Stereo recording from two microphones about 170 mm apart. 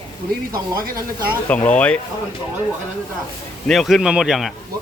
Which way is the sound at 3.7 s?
Centre (ahead or behind).